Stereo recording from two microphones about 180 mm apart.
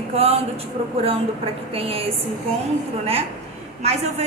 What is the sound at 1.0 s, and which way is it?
A woman's voice, 30° right (ahead or behind).